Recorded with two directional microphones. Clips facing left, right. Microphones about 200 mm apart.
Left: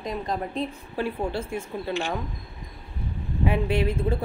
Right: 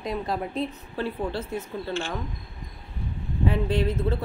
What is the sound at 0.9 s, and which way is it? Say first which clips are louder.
Speech: left 3 dB; 10° left (ahead or behind).